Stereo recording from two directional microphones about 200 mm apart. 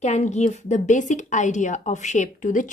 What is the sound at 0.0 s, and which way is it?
Speech, 35° left (ahead or behind).